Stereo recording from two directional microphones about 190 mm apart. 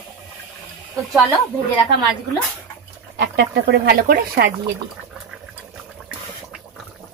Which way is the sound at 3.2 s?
55° right (ahead or behind).